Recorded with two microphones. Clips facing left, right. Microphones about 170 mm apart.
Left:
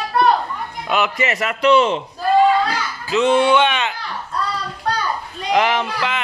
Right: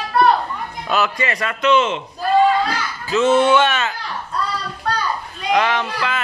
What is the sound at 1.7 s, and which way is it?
Speech, 35° left (ahead or behind).